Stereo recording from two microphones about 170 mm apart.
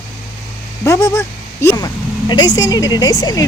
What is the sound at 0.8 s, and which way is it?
Speech, 20° left (ahead or behind).